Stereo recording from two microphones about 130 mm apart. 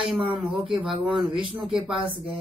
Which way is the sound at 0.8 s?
Centre (ahead or behind).